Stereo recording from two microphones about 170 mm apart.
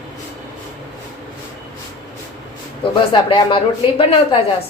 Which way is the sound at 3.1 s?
30° left (ahead or behind).